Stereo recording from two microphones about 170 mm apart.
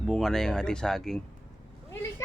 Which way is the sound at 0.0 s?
5° left (ahead or behind).